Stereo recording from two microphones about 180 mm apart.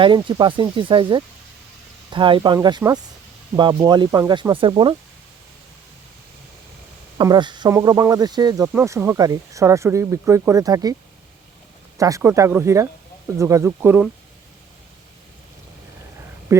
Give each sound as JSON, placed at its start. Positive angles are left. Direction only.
{"t": 0.0, "sound": "speech", "side_deg": -25}
{"t": 7.2, "sound": "speech", "side_deg": -25}
{"t": 11.9, "sound": "speech", "side_deg": -20}
{"t": 16.5, "sound": "speech", "side_deg": -15}